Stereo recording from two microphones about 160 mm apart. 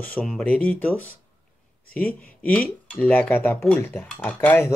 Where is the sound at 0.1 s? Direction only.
5° left (ahead or behind).